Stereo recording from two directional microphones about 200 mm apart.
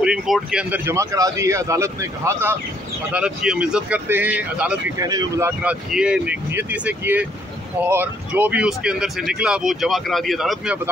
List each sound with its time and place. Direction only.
0.0 s speech: 5° right (ahead or behind)
4.9 s speech: 15° right (ahead or behind)
5.6 s speech: 5° right (ahead or behind)